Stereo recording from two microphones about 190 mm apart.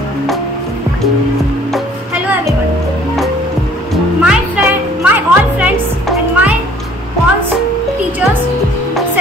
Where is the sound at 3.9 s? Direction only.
5° right (ahead or behind).